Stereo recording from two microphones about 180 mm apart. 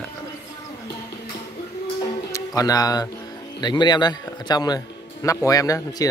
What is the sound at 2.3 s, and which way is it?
A man's voice, 20° left (ahead or behind).